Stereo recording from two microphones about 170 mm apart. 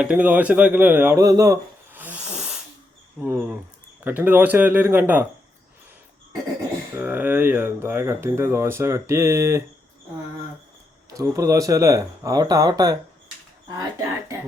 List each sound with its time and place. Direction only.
0.0 s speech: 10° right (ahead or behind)
6.9 s speech: 10° right (ahead or behind)
11.1 s speech: 20° right (ahead or behind)